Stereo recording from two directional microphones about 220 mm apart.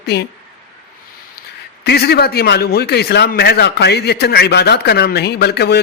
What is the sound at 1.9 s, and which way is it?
Speech, 45° left (ahead or behind).